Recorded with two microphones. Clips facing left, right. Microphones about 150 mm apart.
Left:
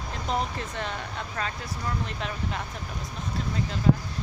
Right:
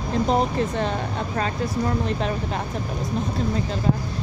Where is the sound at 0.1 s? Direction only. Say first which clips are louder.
Right 9 dB; 35° right (ahead or behind).